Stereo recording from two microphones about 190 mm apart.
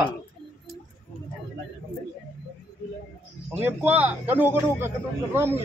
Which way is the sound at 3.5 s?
10° right (ahead or behind).